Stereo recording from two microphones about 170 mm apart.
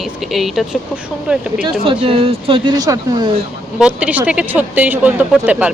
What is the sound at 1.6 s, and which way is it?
Speech, 30° right (ahead or behind).